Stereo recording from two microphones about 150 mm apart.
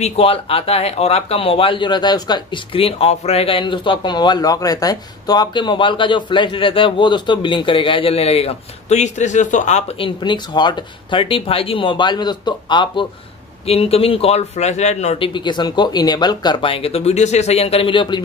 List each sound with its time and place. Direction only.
0.0 s speech: 40° left (ahead or behind)